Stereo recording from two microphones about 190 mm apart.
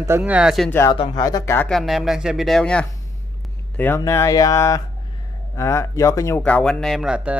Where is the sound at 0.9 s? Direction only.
25° left (ahead or behind).